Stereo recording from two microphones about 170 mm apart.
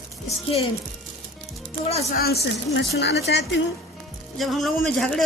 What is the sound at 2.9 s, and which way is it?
Speech, 80° left.